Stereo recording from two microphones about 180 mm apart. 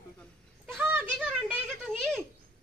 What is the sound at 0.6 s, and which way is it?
Speech, 10° right (ahead or behind).